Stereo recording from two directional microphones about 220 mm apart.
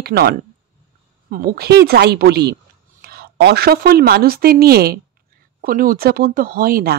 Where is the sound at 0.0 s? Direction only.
45° right (ahead or behind).